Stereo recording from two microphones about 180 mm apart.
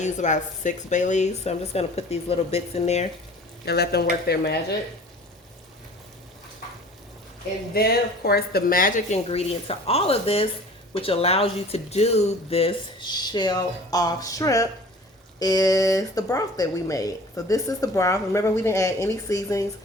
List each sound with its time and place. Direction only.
0.0 s speech: 40° left (ahead or behind)
3.7 s speech: 65° left (ahead or behind)
7.7 s speech: 60° left (ahead or behind); by 19.6 s 20° left (ahead or behind)